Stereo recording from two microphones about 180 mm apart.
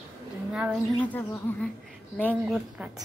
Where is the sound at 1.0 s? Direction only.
10° left (ahead or behind).